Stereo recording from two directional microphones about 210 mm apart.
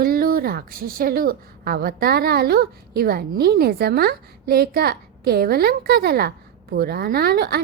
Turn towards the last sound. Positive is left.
turn(degrees=-50)  # may be behind; listen again after turning